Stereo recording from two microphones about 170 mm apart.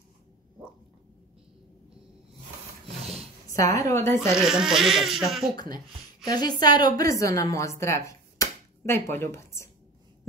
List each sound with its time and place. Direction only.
3.4 s a woman's voice: 20° left (ahead or behind)
4.3 s speech: 5° right (ahead or behind)
6.2 s a woman's voice: 25° left (ahead or behind)